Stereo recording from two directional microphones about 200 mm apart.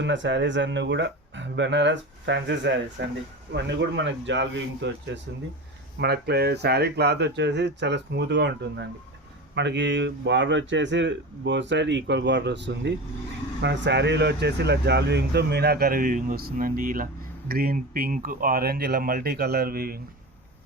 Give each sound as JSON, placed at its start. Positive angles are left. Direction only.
{"t": 0.0, "sound": "speech", "side_deg": -65}